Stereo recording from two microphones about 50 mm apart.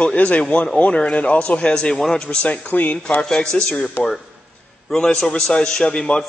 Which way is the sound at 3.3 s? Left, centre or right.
Centre.